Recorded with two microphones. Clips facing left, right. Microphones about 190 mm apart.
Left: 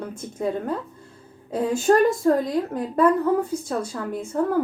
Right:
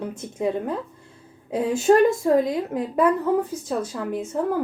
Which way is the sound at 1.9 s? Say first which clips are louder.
Right 1 dB; 10° right (ahead or behind).